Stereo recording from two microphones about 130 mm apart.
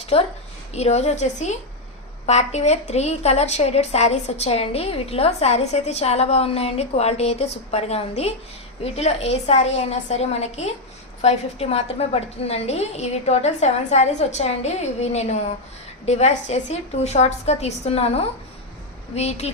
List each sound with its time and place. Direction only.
0.1 s a woman's voice: 50° left (ahead or behind)